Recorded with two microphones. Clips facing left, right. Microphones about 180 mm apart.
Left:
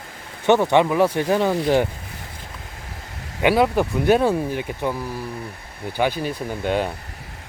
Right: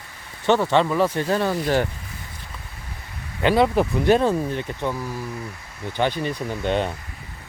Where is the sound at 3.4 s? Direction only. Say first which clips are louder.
Left 1 dB; 10° left (ahead or behind).